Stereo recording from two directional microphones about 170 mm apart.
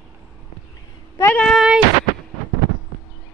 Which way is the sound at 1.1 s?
15° left (ahead or behind).